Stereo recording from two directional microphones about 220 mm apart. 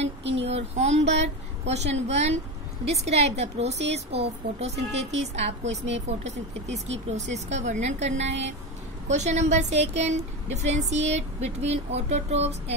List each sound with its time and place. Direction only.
0.2 s child singing: 55° right (ahead or behind)
0.5 s a woman's voice: 30° right (ahead or behind)